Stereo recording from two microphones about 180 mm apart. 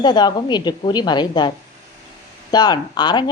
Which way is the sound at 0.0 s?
25° left (ahead or behind).